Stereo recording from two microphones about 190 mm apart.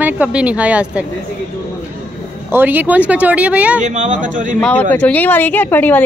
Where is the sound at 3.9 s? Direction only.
40° right (ahead or behind).